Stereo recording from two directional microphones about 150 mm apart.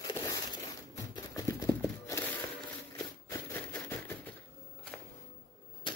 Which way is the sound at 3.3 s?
15° left (ahead or behind).